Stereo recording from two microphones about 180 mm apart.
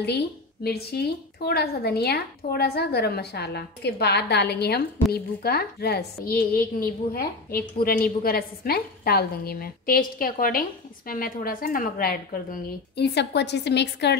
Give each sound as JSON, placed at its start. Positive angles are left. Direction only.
{"t": 0.7, "sound": "a woman's voice", "side_deg": 65}